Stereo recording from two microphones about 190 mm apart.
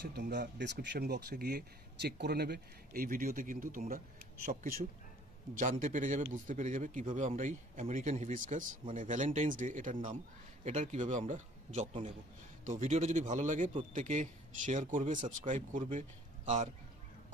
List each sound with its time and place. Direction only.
0.0 s a man's voice: 60° right (ahead or behind); by 16.7 s 40° right (ahead or behind)